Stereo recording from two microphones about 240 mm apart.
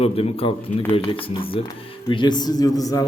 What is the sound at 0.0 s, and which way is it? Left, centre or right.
A man's voice, left.